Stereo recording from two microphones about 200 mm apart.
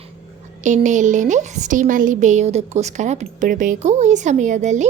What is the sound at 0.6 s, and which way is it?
A woman's voice, 40° right (ahead or behind).